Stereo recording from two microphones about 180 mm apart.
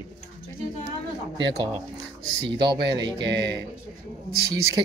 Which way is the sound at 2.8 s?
70° right (ahead or behind).